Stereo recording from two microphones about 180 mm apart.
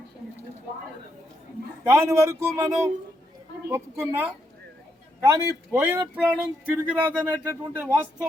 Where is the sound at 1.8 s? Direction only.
15° right (ahead or behind).